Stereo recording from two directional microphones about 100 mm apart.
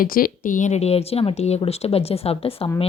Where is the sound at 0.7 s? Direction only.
90° left.